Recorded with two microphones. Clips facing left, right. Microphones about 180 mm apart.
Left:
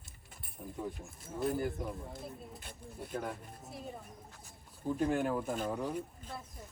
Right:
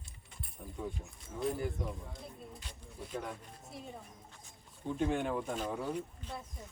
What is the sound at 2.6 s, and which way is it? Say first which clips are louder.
Speech: left 2 dB; 55° left (ahead or behind).